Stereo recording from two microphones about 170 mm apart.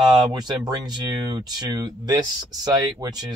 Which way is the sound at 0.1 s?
25° right (ahead or behind).